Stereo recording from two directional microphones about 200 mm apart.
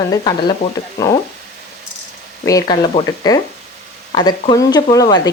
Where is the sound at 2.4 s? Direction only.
15° left (ahead or behind).